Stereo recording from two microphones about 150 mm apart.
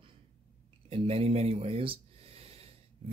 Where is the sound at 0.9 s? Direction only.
40° right (ahead or behind).